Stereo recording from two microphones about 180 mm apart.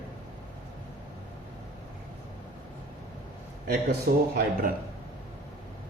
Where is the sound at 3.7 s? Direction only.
60° right (ahead or behind).